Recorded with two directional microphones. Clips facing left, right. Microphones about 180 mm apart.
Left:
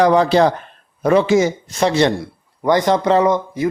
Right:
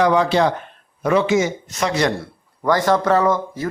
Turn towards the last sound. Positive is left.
turn(degrees=15)  # may be behind; listen again after turning